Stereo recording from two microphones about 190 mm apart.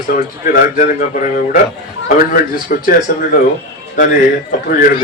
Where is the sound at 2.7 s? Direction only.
50° left (ahead or behind).